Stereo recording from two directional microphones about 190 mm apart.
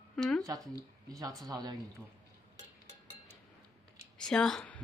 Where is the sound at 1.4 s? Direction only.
20° right (ahead or behind).